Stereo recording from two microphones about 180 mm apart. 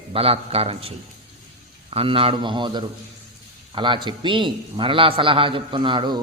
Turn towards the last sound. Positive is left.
turn(degrees=-25)  # may be behind; listen again after turning